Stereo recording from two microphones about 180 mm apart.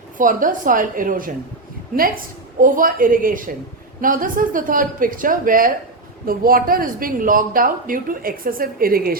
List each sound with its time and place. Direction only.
0.2 s speech: 45° right (ahead or behind)